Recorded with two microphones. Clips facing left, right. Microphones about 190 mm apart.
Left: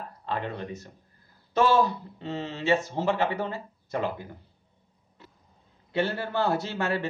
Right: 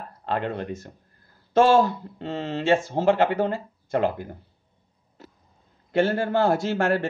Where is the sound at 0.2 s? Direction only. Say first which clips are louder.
Right 5 dB; 65° right (ahead or behind); by 4.4 s 50° right (ahead or behind).